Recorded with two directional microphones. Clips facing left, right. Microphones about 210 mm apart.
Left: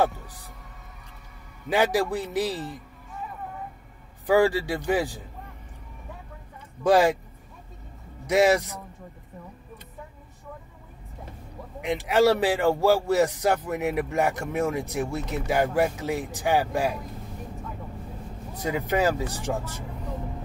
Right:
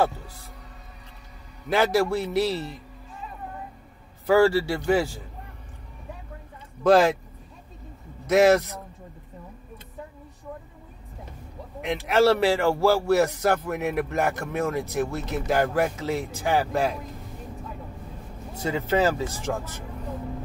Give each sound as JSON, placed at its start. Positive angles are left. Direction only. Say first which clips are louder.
{"t": 1.7, "sound": "speech", "louder": "right 1 dB", "side_deg": 15}
{"t": 4.3, "sound": "speech", "louder": "right 2 dB", "side_deg": 15}
{"t": 6.8, "sound": "speech", "louder": "right 2 dB", "side_deg": 15}
{"t": 8.3, "sound": "speech", "louder": "right 2 dB", "side_deg": 15}
{"t": 11.8, "sound": "speech", "louder": "even", "side_deg": 15}
{"t": 18.6, "sound": "speech", "louder": "right 1 dB", "side_deg": 15}